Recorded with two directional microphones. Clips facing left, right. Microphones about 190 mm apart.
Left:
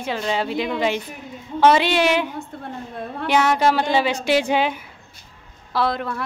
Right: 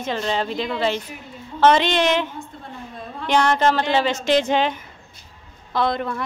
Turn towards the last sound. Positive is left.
turn(degrees=0)  # may be behind; listen again after turning